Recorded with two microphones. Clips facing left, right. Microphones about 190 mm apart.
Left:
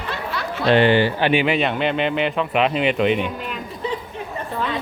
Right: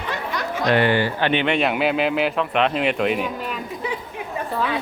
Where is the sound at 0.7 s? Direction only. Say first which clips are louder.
Left 4 dB; 25° left (ahead or behind); by 3.3 s 5° right (ahead or behind).